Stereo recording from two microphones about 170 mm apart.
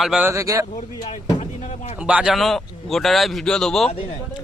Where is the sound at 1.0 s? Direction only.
30° left (ahead or behind).